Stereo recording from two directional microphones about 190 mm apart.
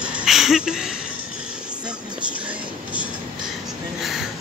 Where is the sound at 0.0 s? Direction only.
5° right (ahead or behind).